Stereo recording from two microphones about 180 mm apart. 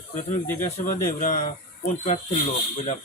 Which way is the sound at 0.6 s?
45° left (ahead or behind).